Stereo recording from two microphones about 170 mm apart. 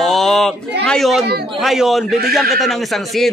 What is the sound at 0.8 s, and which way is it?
A man's voice, centre (ahead or behind).